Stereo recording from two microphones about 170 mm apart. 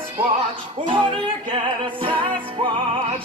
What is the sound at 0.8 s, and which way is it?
Speech, 30° right (ahead or behind).